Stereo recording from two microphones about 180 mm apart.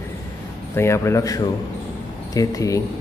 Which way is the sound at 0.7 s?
15° left (ahead or behind).